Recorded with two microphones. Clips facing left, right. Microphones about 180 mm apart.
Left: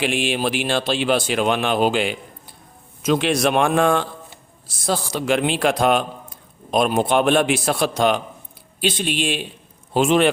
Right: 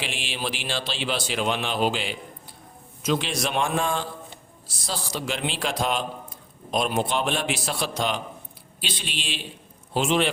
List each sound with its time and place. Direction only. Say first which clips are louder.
0.0 s a man's voice: left 10 dB; 55° left (ahead or behind)